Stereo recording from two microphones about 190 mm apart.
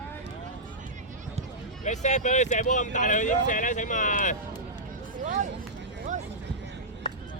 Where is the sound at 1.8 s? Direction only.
40° left (ahead or behind).